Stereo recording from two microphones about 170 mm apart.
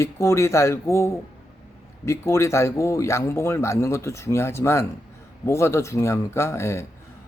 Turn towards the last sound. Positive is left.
turn(degrees=15)  # may be behind; listen again after turning